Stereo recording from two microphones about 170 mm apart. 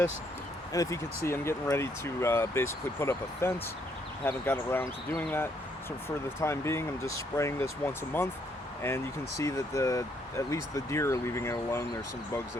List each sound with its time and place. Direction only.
0.7 s speech: 20° left (ahead or behind)
9.4 s speech: 20° left (ahead or behind)